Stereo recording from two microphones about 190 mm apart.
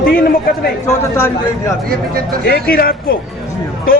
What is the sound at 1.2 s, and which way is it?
Speech, 15° left (ahead or behind).